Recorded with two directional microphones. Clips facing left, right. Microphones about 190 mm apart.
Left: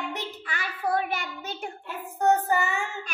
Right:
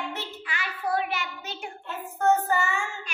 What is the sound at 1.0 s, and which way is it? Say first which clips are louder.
Child singing: left 1 dB; 50° left (ahead or behind).